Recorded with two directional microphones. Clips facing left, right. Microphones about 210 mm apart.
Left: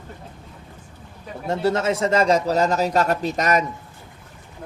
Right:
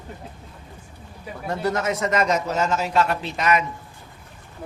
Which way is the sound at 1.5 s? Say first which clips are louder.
Left 3 dB; 25° left (ahead or behind).